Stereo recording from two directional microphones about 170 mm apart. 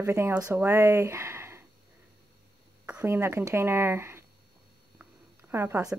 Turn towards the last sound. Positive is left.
turn(degrees=-15)  # may be behind; listen again after turning